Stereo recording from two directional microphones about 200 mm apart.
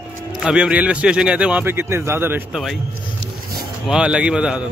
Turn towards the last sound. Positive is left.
turn(degrees=-5)  # may be behind; listen again after turning